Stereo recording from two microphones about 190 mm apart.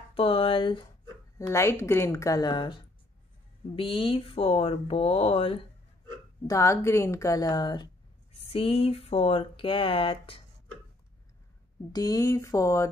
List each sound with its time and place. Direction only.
0.1 s speech: 30° left (ahead or behind)
1.4 s a woman's voice: 15° left (ahead or behind); by 5.6 s 30° left (ahead or behind)
6.4 s a woman's voice: 15° left (ahead or behind)
11.9 s a woman's voice: 20° left (ahead or behind)